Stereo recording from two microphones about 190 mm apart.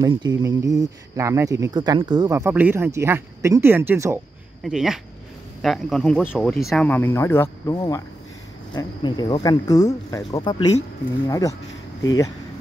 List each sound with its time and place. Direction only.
0.0 s speech: 20° right (ahead or behind)
4.6 s speech: centre (ahead or behind); by 12.3 s 20° left (ahead or behind)